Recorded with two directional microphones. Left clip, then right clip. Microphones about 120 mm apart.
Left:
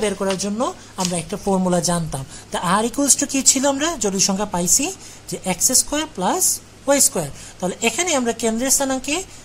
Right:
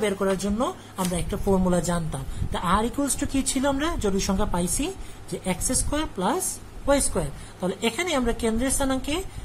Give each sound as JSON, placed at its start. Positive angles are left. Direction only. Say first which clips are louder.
{"t": 0.0, "sound": "speech", "louder": "left 3 dB", "side_deg": 45}